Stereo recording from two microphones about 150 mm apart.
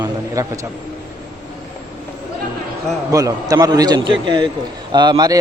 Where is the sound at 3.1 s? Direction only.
25° right (ahead or behind).